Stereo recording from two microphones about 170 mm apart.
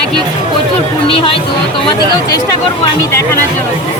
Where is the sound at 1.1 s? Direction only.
30° left (ahead or behind).